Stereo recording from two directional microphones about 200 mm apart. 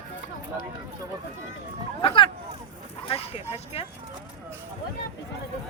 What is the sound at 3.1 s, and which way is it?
Dog, 30° left (ahead or behind).